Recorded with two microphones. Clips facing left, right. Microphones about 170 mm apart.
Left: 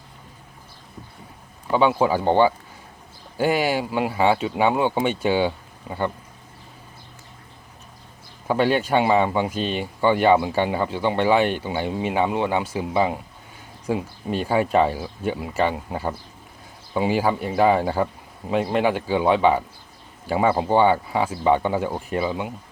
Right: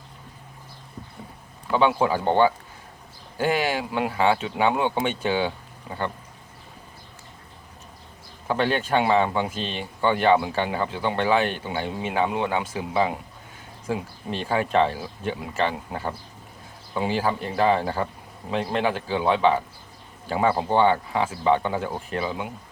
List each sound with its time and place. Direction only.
1.7 s speech: 10° left (ahead or behind)
8.4 s speech: 10° left (ahead or behind)
13.8 s speech: 10° left (ahead or behind)